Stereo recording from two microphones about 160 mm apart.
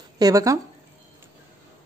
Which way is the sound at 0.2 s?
20° right (ahead or behind).